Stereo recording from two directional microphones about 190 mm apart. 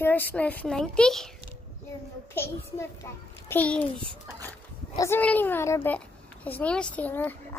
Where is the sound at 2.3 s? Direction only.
15° left (ahead or behind).